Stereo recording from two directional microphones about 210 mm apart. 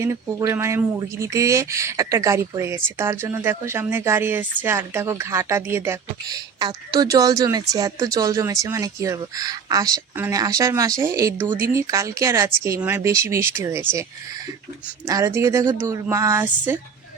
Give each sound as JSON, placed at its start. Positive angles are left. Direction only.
{"t": 0.0, "sound": "speech", "side_deg": -15}
{"t": 15.0, "sound": "speech", "side_deg": -15}